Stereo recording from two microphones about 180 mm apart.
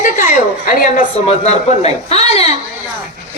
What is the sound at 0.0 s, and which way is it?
A woman's voice, 45° left (ahead or behind).